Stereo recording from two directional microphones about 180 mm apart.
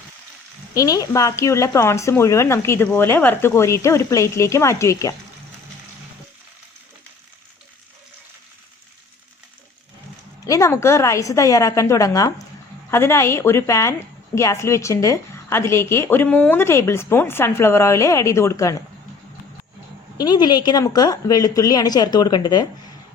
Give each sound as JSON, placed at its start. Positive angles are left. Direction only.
{"t": 0.7, "sound": "speech", "side_deg": 20}
{"t": 10.4, "sound": "speech", "side_deg": 15}
{"t": 20.1, "sound": "speech", "side_deg": 20}